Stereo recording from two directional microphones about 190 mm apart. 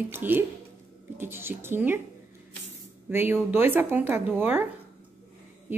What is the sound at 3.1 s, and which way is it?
Speech, 10° right (ahead or behind).